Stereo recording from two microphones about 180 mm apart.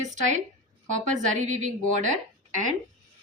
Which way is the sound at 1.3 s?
40° right (ahead or behind).